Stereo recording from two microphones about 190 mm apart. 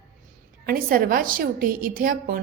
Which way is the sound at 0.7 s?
50° right (ahead or behind).